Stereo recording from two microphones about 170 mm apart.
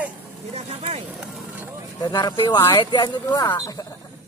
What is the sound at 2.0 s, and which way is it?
Speech, 25° left (ahead or behind).